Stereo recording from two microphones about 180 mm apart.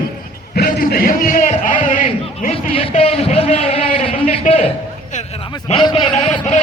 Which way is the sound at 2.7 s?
30° left (ahead or behind).